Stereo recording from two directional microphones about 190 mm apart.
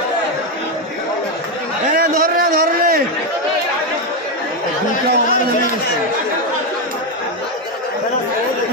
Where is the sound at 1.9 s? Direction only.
45° right (ahead or behind).